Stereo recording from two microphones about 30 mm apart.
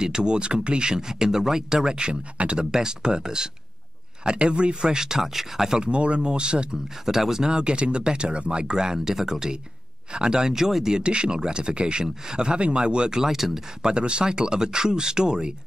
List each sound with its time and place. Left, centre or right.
0.0 s speech: right
2.3 s speech: right
2.6 s speech: right
4.2 s speech: right
4.9 s speech: right
5.2 s speech: centre
5.8 s speech: right
7.1 s speech: centre
7.4 s speech: right
11.0 s speech: right
12.5 s speech: right
13.2 s speech: centre
13.8 s speech: right